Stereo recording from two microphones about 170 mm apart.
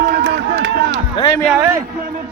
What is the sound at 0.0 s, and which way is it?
Run, 80° right.